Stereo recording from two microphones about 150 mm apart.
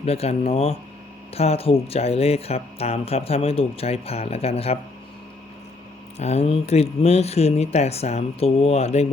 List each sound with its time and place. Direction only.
0.0 s speech: 45° left (ahead or behind)
6.1 s speech: 45° left (ahead or behind)